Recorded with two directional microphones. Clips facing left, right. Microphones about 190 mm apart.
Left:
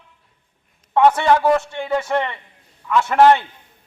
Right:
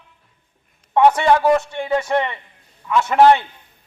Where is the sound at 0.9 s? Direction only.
15° right (ahead or behind).